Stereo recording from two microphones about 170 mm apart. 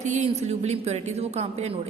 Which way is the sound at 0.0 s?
45° right (ahead or behind).